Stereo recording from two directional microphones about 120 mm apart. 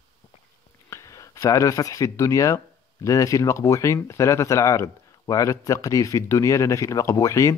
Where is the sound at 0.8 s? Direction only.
25° left (ahead or behind).